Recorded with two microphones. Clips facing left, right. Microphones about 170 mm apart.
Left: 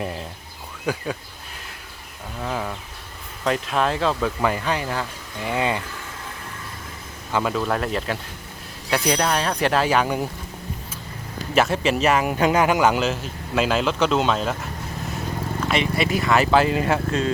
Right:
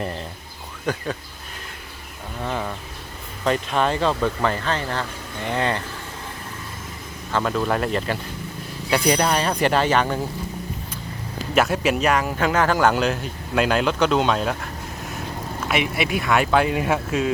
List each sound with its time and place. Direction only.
0.0 s speech: 5° left (ahead or behind)
2.4 s speech: centre (ahead or behind)
7.3 s speech: centre (ahead or behind)
11.5 s speech: centre (ahead or behind)
12.2 s speech: 15° left (ahead or behind); by 17.3 s 5° right (ahead or behind)